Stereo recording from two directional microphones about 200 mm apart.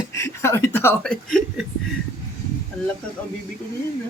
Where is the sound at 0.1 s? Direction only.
15° left (ahead or behind).